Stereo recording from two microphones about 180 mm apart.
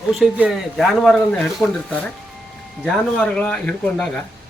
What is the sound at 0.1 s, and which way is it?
Speech, 5° right (ahead or behind).